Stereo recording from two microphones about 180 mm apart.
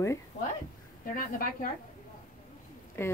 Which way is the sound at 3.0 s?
15° left (ahead or behind).